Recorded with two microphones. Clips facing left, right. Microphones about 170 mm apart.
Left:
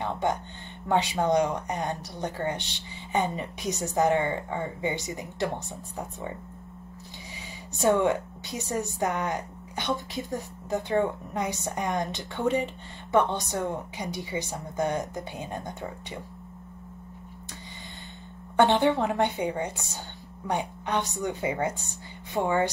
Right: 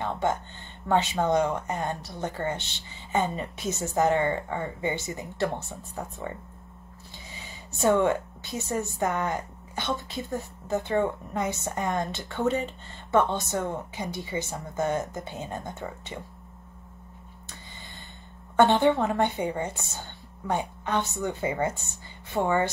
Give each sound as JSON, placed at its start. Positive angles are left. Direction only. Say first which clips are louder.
{"t": 0.0, "sound": "a sound", "louder": "right 1 dB", "side_deg": 15}
{"t": 0.8, "sound": "speech", "louder": "even", "side_deg": 15}
{"t": 7.7, "sound": "a woman's voice", "louder": "even", "side_deg": 15}
{"t": 18.6, "sound": "speech", "louder": "right 1 dB", "side_deg": 15}